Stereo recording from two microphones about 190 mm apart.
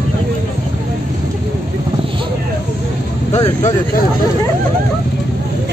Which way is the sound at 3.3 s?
35° left (ahead or behind).